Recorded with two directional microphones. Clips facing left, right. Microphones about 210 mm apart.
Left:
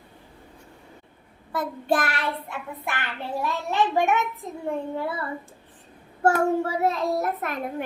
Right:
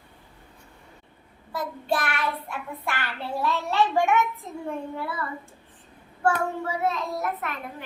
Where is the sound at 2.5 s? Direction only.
20° left (ahead or behind).